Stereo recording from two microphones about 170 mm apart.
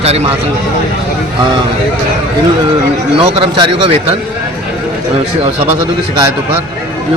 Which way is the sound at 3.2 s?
35° right (ahead or behind).